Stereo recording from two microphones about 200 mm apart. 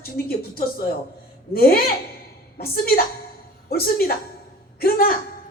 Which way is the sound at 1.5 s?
50° left (ahead or behind).